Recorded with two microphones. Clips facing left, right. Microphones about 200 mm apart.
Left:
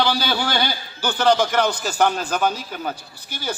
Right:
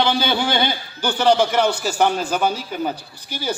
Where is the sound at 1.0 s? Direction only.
10° right (ahead or behind).